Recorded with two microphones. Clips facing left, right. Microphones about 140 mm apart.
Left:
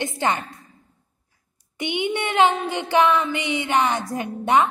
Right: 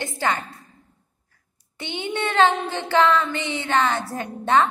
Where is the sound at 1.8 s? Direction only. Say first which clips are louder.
Left 3 dB; 15° left (ahead or behind).